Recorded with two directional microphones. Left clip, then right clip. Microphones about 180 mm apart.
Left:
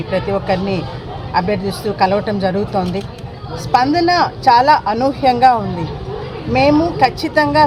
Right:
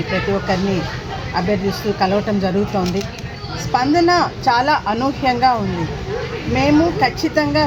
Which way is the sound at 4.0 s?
15° left (ahead or behind).